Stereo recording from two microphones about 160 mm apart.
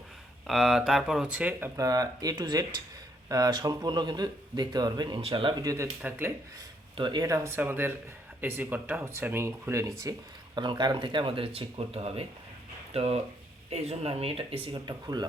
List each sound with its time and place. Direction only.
0.4 s speech: centre (ahead or behind)
6.9 s speech: 30° right (ahead or behind)